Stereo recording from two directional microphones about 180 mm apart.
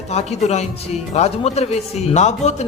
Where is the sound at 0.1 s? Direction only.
35° left (ahead or behind).